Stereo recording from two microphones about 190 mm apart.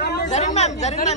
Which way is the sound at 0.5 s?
35° left (ahead or behind).